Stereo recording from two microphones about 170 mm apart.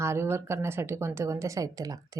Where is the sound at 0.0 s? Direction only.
15° right (ahead or behind).